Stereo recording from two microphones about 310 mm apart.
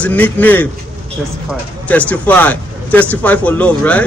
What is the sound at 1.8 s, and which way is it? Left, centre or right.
A man's voice, centre.